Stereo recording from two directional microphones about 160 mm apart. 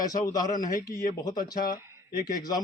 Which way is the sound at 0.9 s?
20° left (ahead or behind).